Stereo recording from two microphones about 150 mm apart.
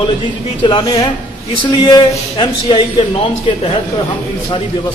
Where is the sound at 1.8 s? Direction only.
30° left (ahead or behind).